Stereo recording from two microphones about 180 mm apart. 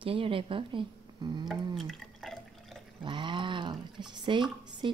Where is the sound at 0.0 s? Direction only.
30° right (ahead or behind).